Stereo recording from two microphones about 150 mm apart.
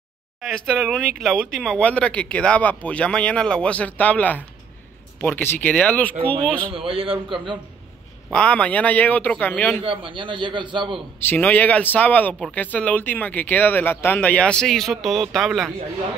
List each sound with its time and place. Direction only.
0.4 s speech: centre (ahead or behind)
6.7 s a man's voice: 40° right (ahead or behind)
8.3 s speech: 5° left (ahead or behind)
9.8 s a man's voice: 35° right (ahead or behind)
11.1 s speech: 15° left (ahead or behind)